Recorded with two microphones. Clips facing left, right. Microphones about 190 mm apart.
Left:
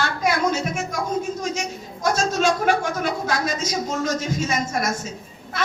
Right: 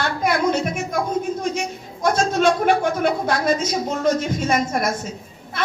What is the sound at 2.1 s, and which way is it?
A woman's voice, 60° right (ahead or behind).